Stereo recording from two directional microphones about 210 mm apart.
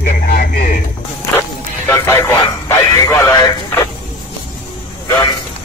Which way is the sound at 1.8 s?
10° left (ahead or behind).